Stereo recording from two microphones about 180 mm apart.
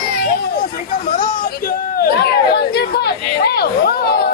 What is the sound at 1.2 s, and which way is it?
Chatter, 55° left (ahead or behind).